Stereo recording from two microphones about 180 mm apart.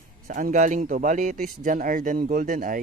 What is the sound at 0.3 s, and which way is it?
Speech, 45° right (ahead or behind).